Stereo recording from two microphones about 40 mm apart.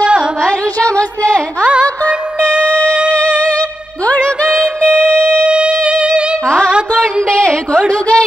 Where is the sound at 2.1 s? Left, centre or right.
Right.